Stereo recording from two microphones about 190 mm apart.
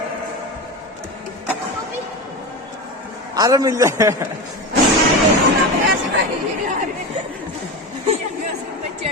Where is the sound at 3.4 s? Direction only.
20° right (ahead or behind).